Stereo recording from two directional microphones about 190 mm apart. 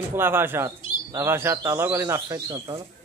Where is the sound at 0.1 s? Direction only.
10° right (ahead or behind).